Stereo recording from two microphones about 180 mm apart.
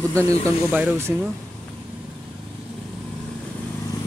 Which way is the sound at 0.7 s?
10° right (ahead or behind).